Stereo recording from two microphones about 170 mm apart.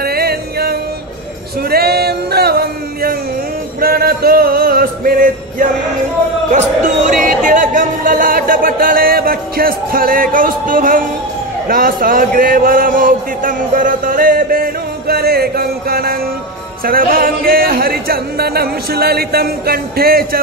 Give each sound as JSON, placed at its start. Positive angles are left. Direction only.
{"t": 0.0, "sound": "music", "side_deg": -65}
{"t": 7.1, "sound": "a man's voice", "side_deg": -50}